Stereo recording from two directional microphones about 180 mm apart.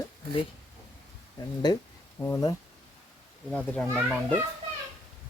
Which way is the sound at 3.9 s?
10° right (ahead or behind).